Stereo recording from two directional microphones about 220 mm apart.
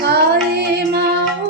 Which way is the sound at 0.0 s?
45° right (ahead or behind).